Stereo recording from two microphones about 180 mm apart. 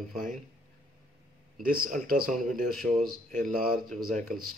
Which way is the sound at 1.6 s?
50° right (ahead or behind).